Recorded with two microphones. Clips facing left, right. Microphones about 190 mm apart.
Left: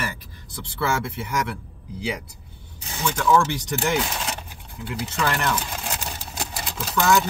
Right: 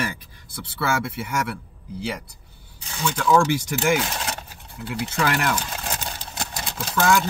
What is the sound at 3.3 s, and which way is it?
Speech, 10° right (ahead or behind).